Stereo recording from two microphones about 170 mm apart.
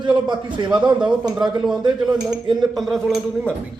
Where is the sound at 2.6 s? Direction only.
Centre (ahead or behind).